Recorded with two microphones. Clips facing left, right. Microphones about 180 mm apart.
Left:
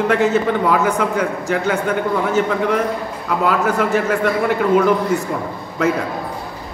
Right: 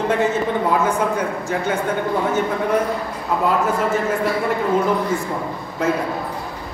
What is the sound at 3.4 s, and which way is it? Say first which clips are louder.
Speech: left 2 dB; 75° left (ahead or behind).